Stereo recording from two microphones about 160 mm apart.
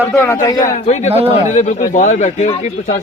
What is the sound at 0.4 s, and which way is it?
Speech, 20° left (ahead or behind).